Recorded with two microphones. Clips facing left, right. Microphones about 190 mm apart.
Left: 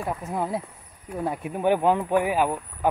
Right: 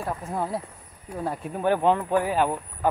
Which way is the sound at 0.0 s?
10° left (ahead or behind).